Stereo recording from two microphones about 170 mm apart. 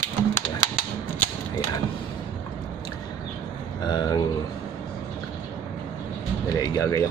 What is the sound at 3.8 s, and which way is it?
Speech, 25° left (ahead or behind).